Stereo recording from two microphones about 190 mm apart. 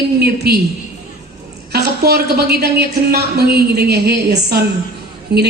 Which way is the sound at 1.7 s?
60° right (ahead or behind).